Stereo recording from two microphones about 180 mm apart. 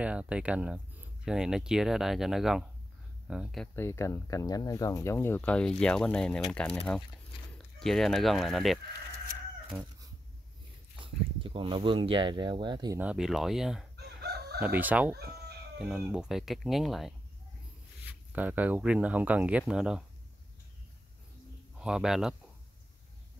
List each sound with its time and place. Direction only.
0.0 s speech: 5° right (ahead or behind)
3.7 s speech: 15° left (ahead or behind)
9.7 s cat: 20° right (ahead or behind)
11.0 s speech: 30° right (ahead or behind)
13.0 s speech: 5° right (ahead or behind)
13.9 s chicken: 65° right (ahead or behind)
14.6 s speech: 10° right (ahead or behind)
18.3 s speech: 10° right (ahead or behind)
21.7 s speech: 5° right (ahead or behind)